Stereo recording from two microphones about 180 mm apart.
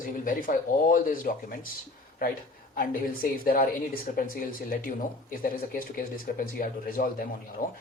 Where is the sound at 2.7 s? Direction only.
50° left (ahead or behind).